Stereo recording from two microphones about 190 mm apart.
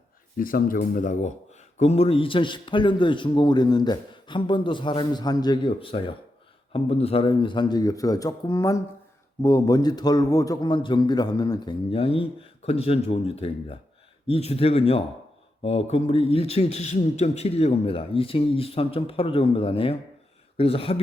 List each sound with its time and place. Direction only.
0.3 s a man's voice: 50° left (ahead or behind); by 21.0 s 30° left (ahead or behind)